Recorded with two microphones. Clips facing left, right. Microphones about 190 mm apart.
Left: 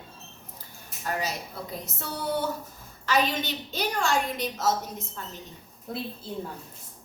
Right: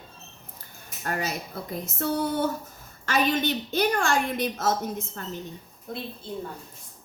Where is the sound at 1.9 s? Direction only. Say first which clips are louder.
Right 4 dB; 50° right (ahead or behind).